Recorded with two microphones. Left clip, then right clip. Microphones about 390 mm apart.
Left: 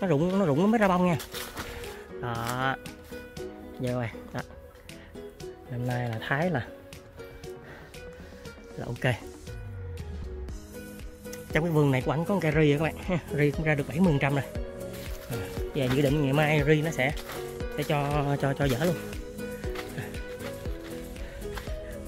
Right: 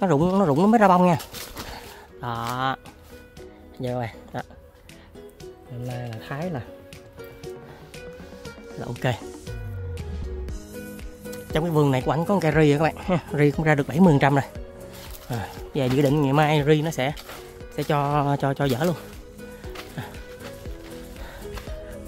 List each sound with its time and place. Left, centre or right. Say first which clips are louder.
0.0 s speech: right 5 dB; centre
2.2 s speech: right 4 dB; centre
3.8 s speech: right 3 dB; centre
5.4 s speech: left 1 dB; centre
8.8 s speech: right 2 dB; centre
10.7 s music: right 5 dB; right
11.5 s speech: right 4 dB; centre
15.7 s speech: right 5 dB; centre
19.3 s music: left 4 dB; left
21.5 s music: even; centre